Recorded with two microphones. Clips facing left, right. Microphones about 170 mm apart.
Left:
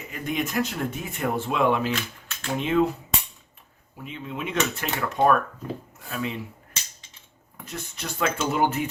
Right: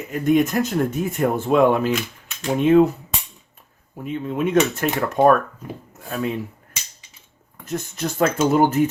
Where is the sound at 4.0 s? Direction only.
45° right (ahead or behind).